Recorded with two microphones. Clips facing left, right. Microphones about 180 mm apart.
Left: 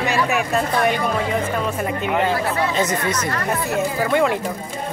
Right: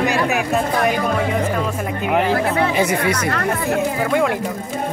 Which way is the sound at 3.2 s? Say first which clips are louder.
Right 3 dB; 60° right (ahead or behind).